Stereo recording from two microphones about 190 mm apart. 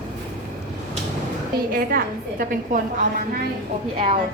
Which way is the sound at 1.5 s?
50° right (ahead or behind).